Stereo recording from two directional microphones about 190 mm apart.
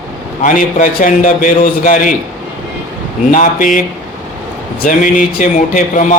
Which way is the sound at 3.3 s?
45° left (ahead or behind).